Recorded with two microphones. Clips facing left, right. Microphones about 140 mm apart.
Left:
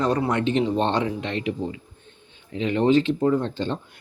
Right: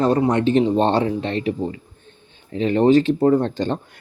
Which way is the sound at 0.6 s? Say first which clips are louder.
Right 5 dB; 35° right (ahead or behind).